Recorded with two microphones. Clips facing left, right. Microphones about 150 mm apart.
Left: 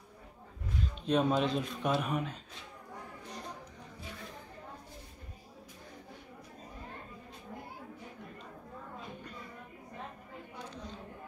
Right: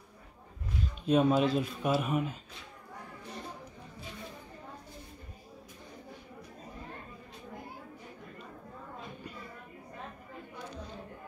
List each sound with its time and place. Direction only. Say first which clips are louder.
1.0 s speech: right 3 dB; 5° right (ahead or behind)